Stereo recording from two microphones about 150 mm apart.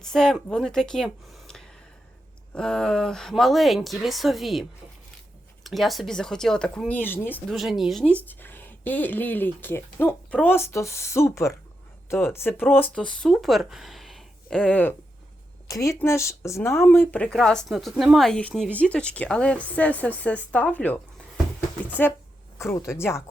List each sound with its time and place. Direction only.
0.0 s speech: 5° left (ahead or behind)
5.6 s speech: centre (ahead or behind)
7.5 s speech: centre (ahead or behind)
8.3 s speech: 15° left (ahead or behind)
12.9 s speech: 5° left (ahead or behind)
15.6 s speech: 20° left (ahead or behind)